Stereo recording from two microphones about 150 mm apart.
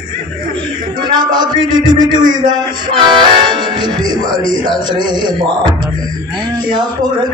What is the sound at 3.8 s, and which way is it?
A man's voice, 30° right (ahead or behind).